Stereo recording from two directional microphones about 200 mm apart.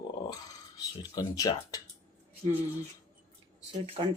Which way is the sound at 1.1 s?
20° left (ahead or behind).